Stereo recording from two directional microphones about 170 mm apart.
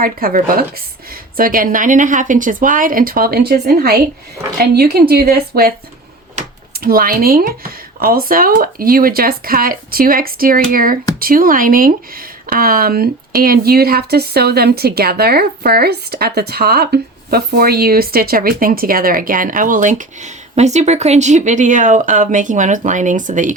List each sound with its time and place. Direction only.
0.0 s speech: 60° right (ahead or behind)
6.7 s speech: 60° right (ahead or behind)